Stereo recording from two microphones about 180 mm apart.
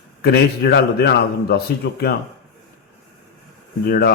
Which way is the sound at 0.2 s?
65° left (ahead or behind).